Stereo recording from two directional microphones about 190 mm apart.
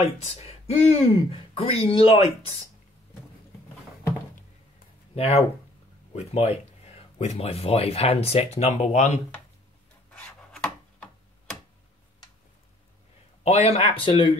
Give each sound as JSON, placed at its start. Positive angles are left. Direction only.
{"t": 0.0, "sound": "speech", "side_deg": 30}
{"t": 5.1, "sound": "speech", "side_deg": 30}
{"t": 10.1, "sound": "filing", "side_deg": 5}
{"t": 13.4, "sound": "speech", "side_deg": 35}